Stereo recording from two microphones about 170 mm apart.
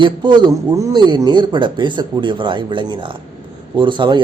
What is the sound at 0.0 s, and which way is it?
Speech, 25° right (ahead or behind).